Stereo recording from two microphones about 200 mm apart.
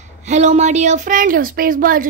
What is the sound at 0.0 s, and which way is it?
A woman's voice, 35° right (ahead or behind).